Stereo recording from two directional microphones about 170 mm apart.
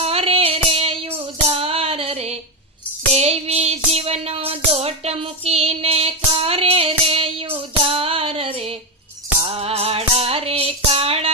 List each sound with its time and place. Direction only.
0.0 s music: 35° right (ahead or behind)
3.1 s child singing: 35° right (ahead or behind)
7.9 s female singing: 35° right (ahead or behind)
9.4 s music: 35° right (ahead or behind)